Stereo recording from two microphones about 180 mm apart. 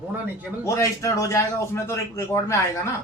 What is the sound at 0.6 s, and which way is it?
Speech, 15° left (ahead or behind).